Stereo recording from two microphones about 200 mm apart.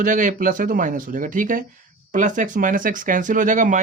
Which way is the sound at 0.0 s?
40° right (ahead or behind).